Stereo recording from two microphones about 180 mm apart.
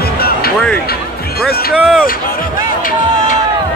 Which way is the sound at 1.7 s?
5° right (ahead or behind).